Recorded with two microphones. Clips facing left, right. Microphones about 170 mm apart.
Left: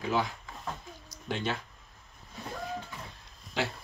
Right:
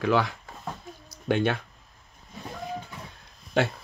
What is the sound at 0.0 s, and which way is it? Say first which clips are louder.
Speech: right 6 dB; 75° right (ahead or behind).